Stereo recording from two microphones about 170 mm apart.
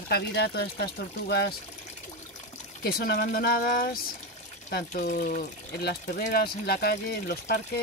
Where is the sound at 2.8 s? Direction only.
65° left (ahead or behind).